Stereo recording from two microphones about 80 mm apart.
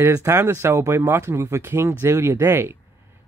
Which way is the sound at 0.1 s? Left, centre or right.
Right.